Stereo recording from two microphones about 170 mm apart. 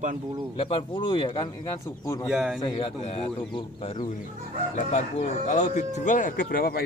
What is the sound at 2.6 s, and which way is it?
Speech, 30° left (ahead or behind).